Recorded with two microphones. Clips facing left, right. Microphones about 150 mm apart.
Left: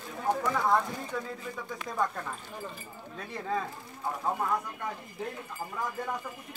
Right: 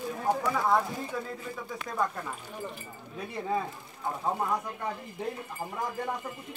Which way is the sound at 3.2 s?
15° right (ahead or behind).